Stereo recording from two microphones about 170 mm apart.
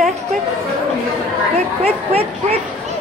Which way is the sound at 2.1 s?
35° right (ahead or behind).